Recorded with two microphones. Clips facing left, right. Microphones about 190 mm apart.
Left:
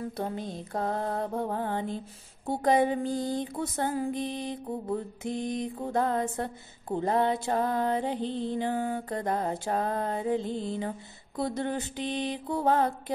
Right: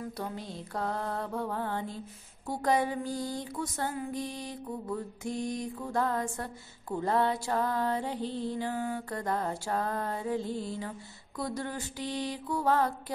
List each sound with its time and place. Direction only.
0.6 s music: 20° left (ahead or behind)
4.6 s music: 35° left (ahead or behind)
5.2 s music: 20° left (ahead or behind)